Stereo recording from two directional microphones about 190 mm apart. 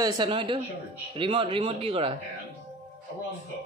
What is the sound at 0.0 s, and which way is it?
A man's voice, 25° right (ahead or behind).